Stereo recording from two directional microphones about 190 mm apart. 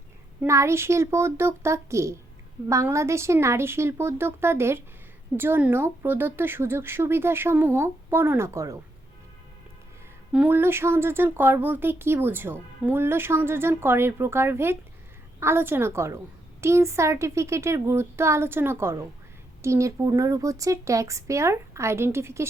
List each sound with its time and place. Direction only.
0.4 s speech: 15° right (ahead or behind)
10.3 s speech: 10° right (ahead or behind)